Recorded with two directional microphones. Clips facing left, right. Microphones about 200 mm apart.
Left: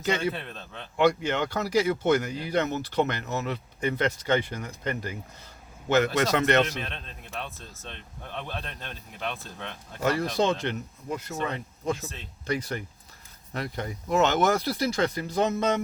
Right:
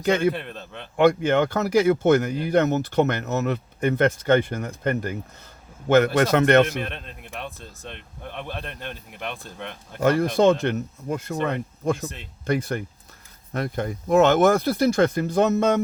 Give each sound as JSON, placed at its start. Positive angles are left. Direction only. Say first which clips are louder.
{"t": 0.0, "sound": "speech", "louder": "right 6 dB", "side_deg": -55}
{"t": 7.3, "sound": "speech", "louder": "right 2 dB", "side_deg": -15}
{"t": 10.0, "sound": "speech", "louder": "right 7 dB", "side_deg": -50}